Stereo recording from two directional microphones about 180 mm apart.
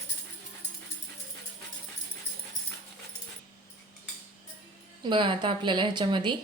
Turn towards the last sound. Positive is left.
turn(degrees=-25)  # may be behind; listen again after turning